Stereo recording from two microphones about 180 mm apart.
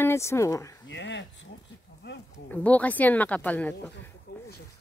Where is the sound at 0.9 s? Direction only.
80° left.